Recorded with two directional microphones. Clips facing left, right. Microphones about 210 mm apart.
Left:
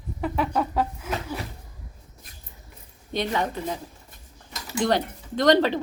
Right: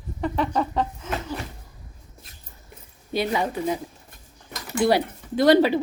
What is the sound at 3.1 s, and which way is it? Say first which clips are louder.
Speech: right 2 dB; 10° right (ahead or behind).